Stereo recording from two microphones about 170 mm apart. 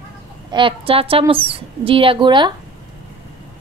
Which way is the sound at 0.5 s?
30° right (ahead or behind).